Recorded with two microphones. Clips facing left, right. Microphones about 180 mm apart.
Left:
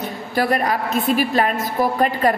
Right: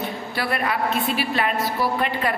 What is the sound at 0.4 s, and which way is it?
A woman's voice, 40° left (ahead or behind).